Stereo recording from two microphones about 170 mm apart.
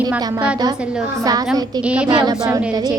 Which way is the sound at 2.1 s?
25° right (ahead or behind).